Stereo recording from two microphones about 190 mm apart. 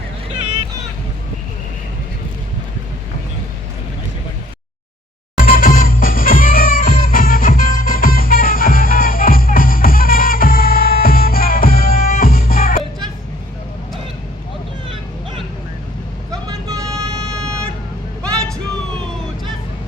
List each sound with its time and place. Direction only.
5.4 s music: 50° left (ahead or behind)
16.3 s vehicle: 20° right (ahead or behind)